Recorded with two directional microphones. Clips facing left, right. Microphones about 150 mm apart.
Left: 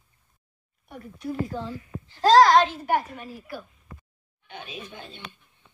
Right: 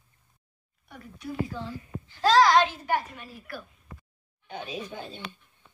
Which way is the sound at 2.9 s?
50° left (ahead or behind).